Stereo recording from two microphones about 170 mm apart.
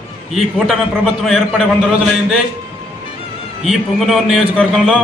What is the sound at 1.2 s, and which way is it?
A man's voice, centre (ahead or behind).